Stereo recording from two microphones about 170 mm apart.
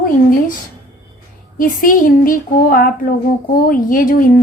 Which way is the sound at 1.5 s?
55° left (ahead or behind).